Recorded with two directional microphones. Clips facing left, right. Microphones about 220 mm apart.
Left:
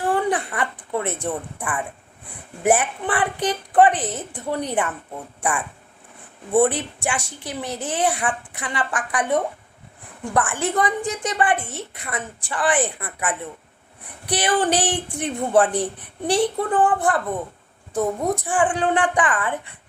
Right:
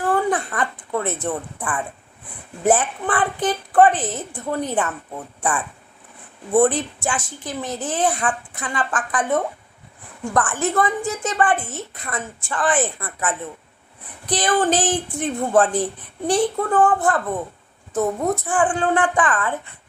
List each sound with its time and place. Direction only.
0.1 s a sound: 15° left (ahead or behind)
0.5 s a woman's voice: 15° left (ahead or behind)
14.3 s a woman's voice: 15° left (ahead or behind)